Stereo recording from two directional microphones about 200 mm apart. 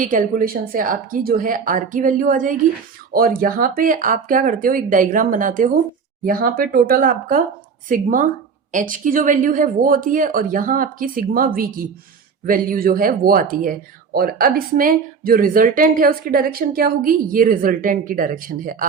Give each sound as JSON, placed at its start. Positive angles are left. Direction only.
{"t": 0.0, "sound": "speech", "side_deg": -40}